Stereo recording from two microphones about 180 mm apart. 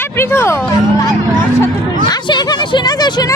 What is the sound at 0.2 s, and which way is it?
Hubbub, 15° left (ahead or behind).